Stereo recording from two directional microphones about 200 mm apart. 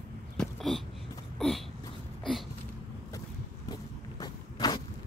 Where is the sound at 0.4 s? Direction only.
Centre (ahead or behind).